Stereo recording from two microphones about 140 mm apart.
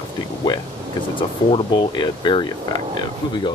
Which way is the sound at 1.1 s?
35° left (ahead or behind).